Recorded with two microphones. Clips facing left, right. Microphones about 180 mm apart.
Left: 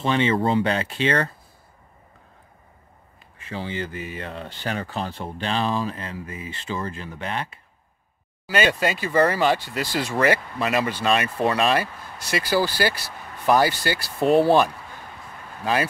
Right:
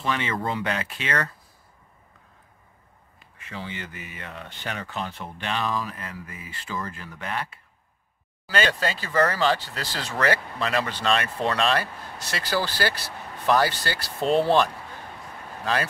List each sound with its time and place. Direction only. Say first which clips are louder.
0.0 s speech: left 7 dB; 25° left (ahead or behind)
3.3 s speech: left 6 dB; 30° left (ahead or behind); by 15.9 s 10° left (ahead or behind)